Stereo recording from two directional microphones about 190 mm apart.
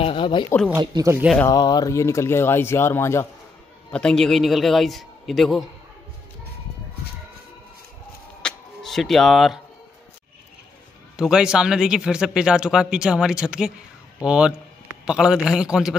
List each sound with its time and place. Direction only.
0.0 s speech: 25° left (ahead or behind)
0.7 s speech: 15° right (ahead or behind)
1.4 s a man's voice: 20° left (ahead or behind); by 5.7 s centre (ahead or behind)
8.4 s music: 5° left (ahead or behind)
11.1 s a man's voice: 5° right (ahead or behind)